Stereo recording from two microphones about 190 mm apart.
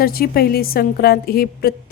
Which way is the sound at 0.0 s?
50° left (ahead or behind).